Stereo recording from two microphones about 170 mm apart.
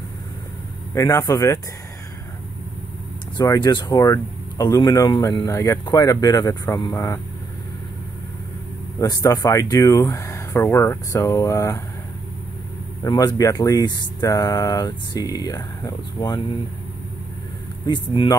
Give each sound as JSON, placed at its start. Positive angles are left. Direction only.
{"t": 0.9, "sound": "speech", "side_deg": 20}
{"t": 3.3, "sound": "speech", "side_deg": 25}
{"t": 8.9, "sound": "speech", "side_deg": 20}
{"t": 13.0, "sound": "speech", "side_deg": 25}
{"t": 17.8, "sound": "speech", "side_deg": 30}